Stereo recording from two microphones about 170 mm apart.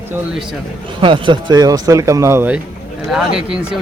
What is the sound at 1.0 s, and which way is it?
Speech, 30° right (ahead or behind).